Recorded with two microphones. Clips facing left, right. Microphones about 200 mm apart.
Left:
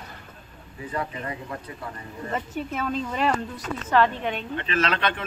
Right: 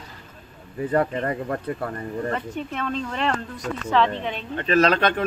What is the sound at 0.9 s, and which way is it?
Speech, 55° right (ahead or behind).